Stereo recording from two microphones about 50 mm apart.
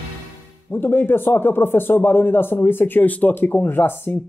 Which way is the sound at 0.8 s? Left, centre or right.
Left.